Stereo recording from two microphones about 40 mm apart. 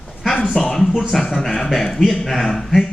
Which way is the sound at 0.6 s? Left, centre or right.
Centre.